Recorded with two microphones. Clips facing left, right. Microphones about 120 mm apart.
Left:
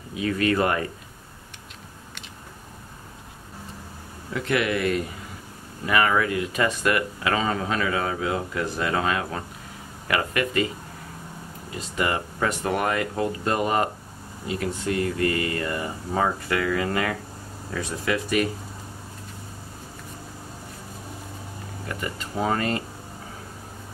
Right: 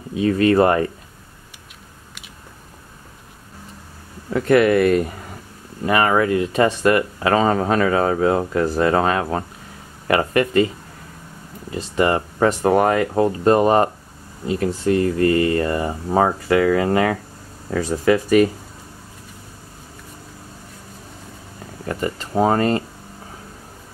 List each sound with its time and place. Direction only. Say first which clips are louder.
0.1 s speech: right 7 dB; 30° right (ahead or behind)
4.3 s speech: right 10 dB; 45° right (ahead or behind)
5.9 s speech: right 5 dB; 35° right (ahead or behind)
11.7 s speech: right 8 dB; 35° right (ahead or behind)
21.8 s speech: right 8 dB; 35° right (ahead or behind)